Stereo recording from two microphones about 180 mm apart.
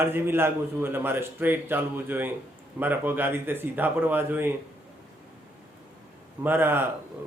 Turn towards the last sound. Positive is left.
turn(degrees=-10)  # may be behind; listen again after turning